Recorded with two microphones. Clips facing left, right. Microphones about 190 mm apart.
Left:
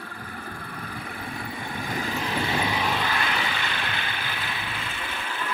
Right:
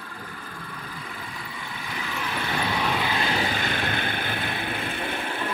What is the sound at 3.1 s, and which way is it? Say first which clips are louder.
Vehicle: right 3 dB; 35° right (ahead or behind).